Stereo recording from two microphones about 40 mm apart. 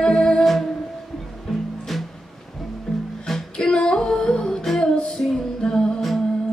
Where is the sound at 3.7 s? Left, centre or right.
Centre.